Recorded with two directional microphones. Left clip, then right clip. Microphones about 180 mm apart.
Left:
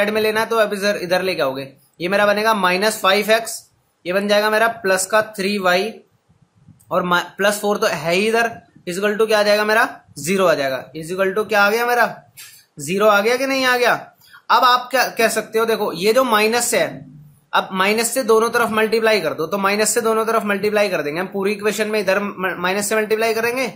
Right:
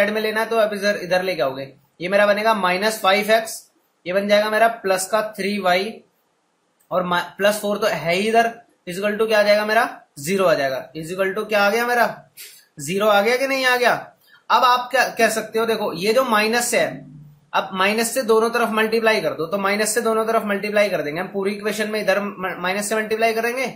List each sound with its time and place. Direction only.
0.0 s a man's voice: 35° left (ahead or behind)
6.9 s a man's voice: 35° left (ahead or behind)